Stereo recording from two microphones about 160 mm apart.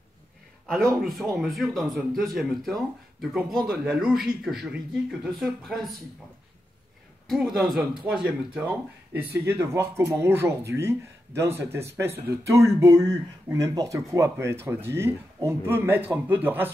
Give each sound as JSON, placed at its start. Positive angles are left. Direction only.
{"t": 1.0, "sound": "speech", "side_deg": 0}
{"t": 7.2, "sound": "speech", "side_deg": 0}